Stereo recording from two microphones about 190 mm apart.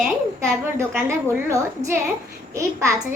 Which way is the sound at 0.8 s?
15° right (ahead or behind).